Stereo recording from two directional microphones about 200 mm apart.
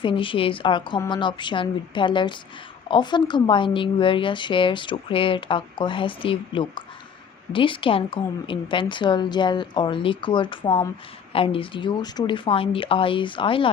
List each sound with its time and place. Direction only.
0.0 s a woman's voice: 25° left (ahead or behind)